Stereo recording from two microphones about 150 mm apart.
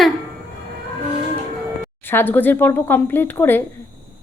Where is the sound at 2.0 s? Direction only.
15° left (ahead or behind).